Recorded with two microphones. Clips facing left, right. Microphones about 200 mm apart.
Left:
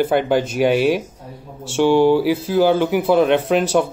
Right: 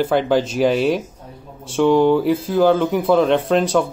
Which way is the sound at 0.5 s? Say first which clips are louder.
Left 1 dB; 5° left (ahead or behind).